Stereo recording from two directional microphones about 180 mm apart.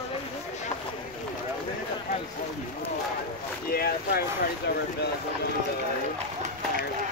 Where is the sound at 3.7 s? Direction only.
60° left (ahead or behind).